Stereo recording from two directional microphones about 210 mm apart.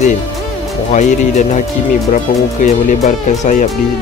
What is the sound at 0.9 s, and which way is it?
Speech, 35° left (ahead or behind).